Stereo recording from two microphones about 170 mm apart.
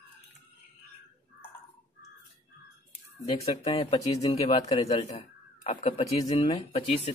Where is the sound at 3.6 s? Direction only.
35° left (ahead or behind).